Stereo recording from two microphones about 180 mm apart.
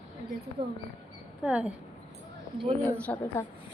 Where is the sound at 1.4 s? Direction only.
5° right (ahead or behind).